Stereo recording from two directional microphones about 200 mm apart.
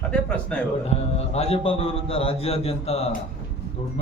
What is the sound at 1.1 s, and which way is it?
A man's voice, 30° left (ahead or behind).